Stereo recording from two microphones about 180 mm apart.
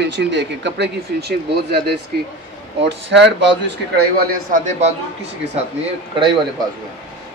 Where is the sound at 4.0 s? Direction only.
60° right (ahead or behind).